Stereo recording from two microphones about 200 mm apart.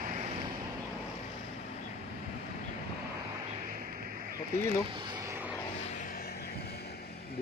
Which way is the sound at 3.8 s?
45° right (ahead or behind).